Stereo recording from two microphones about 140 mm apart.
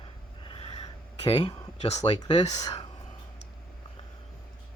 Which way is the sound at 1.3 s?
35° left (ahead or behind).